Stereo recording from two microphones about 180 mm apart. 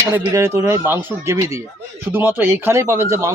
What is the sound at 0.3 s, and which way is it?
Speech, 20° right (ahead or behind).